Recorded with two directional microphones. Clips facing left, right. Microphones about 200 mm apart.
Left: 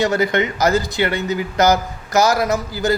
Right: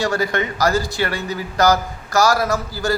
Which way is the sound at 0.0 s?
20° left (ahead or behind).